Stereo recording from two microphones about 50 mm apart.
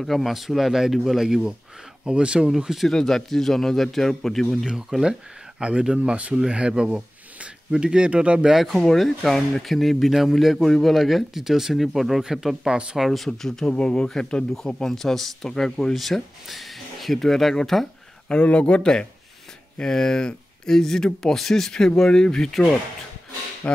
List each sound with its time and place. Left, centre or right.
0.0 s speech: centre
2.0 s speech: centre
2.5 s speech: centre
2.9 s speech: centre
4.6 s speech: centre
8.5 s speech: centre
13.3 s speech: centre
18.3 s speech: left; by 22.7 s centre
23.6 s a sound: left